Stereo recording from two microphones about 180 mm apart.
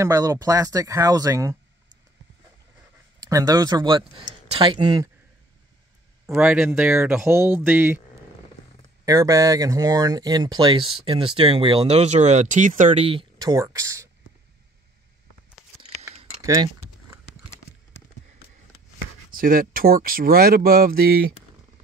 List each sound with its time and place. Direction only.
0.0 s speech: 15° right (ahead or behind)
3.2 s speech: 20° right (ahead or behind)
6.2 s speech: 5° right (ahead or behind)
9.0 s speech: 20° right (ahead or behind)
16.3 s a sound: 20° right (ahead or behind)
19.3 s speech: 50° right (ahead or behind)